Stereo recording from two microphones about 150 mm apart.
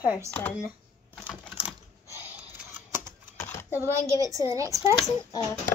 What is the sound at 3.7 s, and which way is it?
A child's voice, 15° right (ahead or behind).